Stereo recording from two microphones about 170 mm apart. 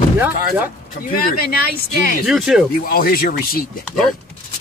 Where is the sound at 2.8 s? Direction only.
60° left (ahead or behind).